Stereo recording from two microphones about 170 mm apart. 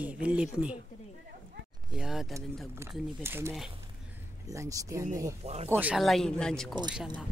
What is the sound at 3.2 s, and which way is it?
Speech, 15° right (ahead or behind).